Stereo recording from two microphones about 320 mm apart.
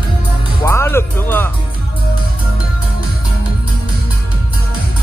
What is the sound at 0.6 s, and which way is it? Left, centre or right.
Speech, centre.